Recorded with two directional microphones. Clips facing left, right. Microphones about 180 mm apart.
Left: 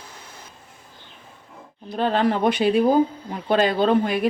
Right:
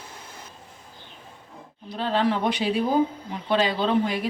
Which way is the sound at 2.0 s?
50° left (ahead or behind).